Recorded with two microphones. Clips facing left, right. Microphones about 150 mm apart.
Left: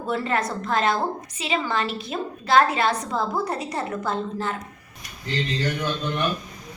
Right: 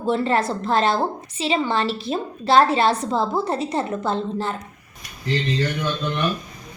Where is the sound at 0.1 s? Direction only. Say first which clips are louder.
Right 5 dB; 30° right (ahead or behind).